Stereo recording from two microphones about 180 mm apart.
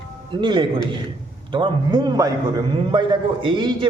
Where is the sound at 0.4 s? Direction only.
25° right (ahead or behind).